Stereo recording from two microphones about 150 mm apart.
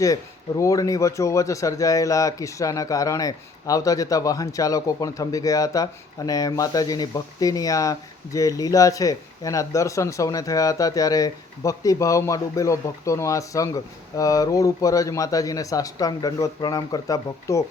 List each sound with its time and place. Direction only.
0.0 s speech: 20° left (ahead or behind)